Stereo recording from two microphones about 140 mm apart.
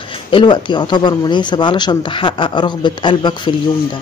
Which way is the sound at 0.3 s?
35° left (ahead or behind).